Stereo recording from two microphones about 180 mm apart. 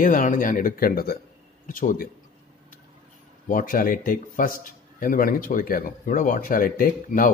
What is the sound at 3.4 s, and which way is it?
A man's voice, 50° left (ahead or behind).